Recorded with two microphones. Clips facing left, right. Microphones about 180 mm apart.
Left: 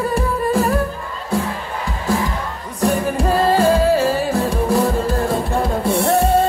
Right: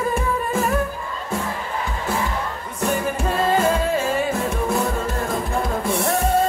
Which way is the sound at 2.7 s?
35° left (ahead or behind).